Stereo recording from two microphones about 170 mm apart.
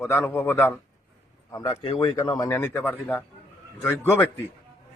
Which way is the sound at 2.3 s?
15° left (ahead or behind).